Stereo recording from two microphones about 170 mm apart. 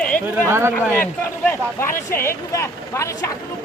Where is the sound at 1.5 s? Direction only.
15° left (ahead or behind).